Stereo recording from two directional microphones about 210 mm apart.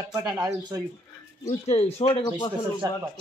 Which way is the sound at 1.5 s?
30° left (ahead or behind).